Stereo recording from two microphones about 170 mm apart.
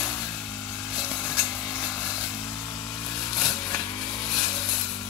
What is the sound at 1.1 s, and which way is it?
Tools, 15° left (ahead or behind).